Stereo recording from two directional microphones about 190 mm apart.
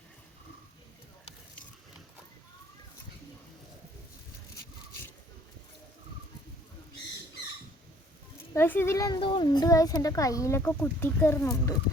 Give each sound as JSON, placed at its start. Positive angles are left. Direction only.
{"t": 8.5, "sound": "speech", "side_deg": 10}